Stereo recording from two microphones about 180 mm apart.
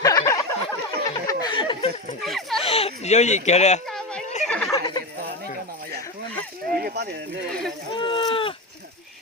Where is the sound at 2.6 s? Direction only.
35° left (ahead or behind).